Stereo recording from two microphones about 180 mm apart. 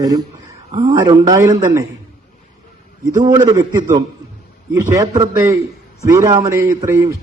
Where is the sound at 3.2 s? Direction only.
20° right (ahead or behind).